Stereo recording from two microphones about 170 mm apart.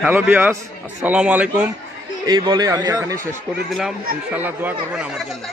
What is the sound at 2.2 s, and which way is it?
Speech, 25° right (ahead or behind).